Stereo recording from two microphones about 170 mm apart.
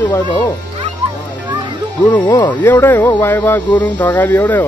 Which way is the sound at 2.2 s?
25° left (ahead or behind).